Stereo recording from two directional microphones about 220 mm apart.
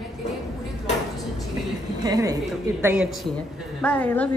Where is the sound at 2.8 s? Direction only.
Centre (ahead or behind).